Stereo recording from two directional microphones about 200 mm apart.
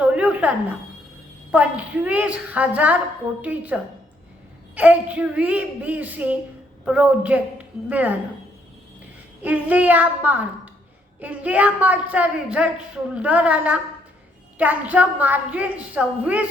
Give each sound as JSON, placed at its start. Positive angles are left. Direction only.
{"t": 0.0, "sound": "a sound", "side_deg": -5}
{"t": 1.5, "sound": "a woman's voice", "side_deg": -5}
{"t": 9.4, "sound": "a woman's voice", "side_deg": -5}